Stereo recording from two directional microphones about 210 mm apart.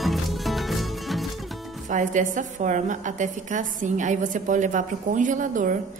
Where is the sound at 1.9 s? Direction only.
35° right (ahead or behind).